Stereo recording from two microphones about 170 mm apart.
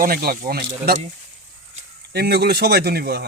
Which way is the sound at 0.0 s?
60° right (ahead or behind).